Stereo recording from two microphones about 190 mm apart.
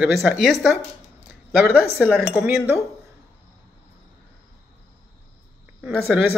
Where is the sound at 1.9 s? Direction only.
5° right (ahead or behind).